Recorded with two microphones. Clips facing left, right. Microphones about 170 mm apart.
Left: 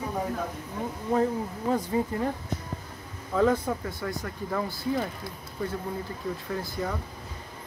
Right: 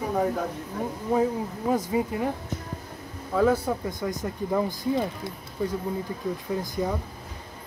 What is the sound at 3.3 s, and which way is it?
Speech, 5° right (ahead or behind).